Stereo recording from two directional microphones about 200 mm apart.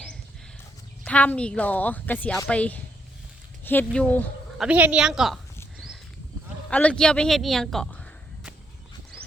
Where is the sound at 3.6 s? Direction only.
10° left (ahead or behind).